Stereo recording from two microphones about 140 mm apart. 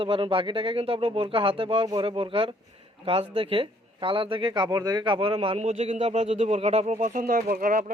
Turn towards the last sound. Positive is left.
turn(degrees=-75)  # may be behind; listen again after turning